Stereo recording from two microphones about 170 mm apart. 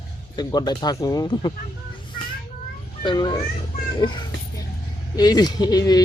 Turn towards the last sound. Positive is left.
turn(degrees=20)  # may be behind; listen again after turning